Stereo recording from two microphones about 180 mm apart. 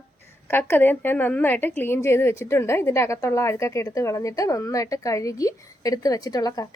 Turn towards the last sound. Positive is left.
turn(degrees=20)  # may be behind; listen again after turning